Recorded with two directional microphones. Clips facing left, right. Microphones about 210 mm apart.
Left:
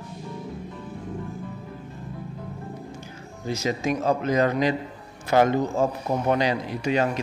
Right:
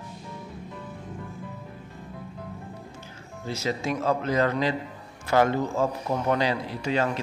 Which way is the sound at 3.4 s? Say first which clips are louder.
Left 3 dB; 15° left (ahead or behind).